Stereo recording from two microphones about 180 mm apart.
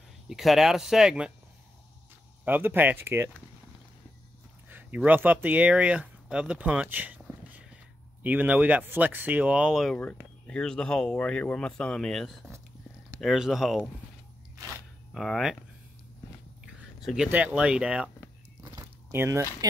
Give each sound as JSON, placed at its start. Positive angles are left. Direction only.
{"t": 0.3, "sound": "speech", "side_deg": 0}
{"t": 2.4, "sound": "speech", "side_deg": -10}
{"t": 4.6, "sound": "speech", "side_deg": -10}
{"t": 15.1, "sound": "speech", "side_deg": 0}
{"t": 17.0, "sound": "speech", "side_deg": -5}
{"t": 18.6, "sound": "biting", "side_deg": -15}